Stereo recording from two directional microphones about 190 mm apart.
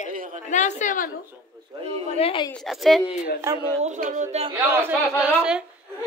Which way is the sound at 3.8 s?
40° right (ahead or behind).